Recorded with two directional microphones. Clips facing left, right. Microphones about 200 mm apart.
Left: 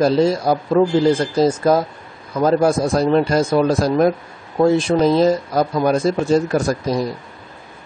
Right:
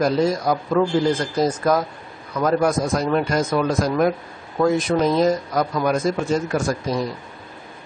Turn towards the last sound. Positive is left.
turn(degrees=35)  # may be behind; listen again after turning